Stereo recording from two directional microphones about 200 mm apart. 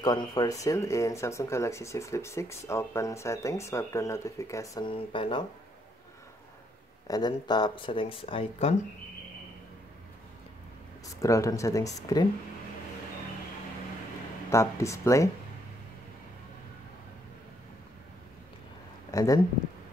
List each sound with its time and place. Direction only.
0.0 s speech: 20° left (ahead or behind)
7.1 s speech: 20° left (ahead or behind)
11.1 s speech: 15° left (ahead or behind)
14.5 s speech: 15° left (ahead or behind)
19.0 s speech: 15° left (ahead or behind)